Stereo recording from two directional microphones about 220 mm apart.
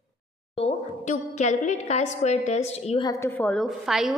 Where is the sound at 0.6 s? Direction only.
30° left (ahead or behind).